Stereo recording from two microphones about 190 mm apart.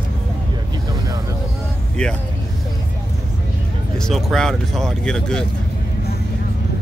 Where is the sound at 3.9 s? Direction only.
Centre (ahead or behind).